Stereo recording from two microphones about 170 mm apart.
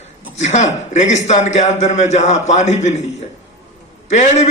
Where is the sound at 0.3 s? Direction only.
45° left (ahead or behind).